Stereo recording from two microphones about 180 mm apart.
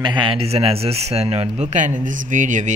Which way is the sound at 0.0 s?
25° right (ahead or behind).